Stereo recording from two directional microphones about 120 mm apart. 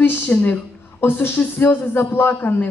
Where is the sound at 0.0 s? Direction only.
15° left (ahead or behind).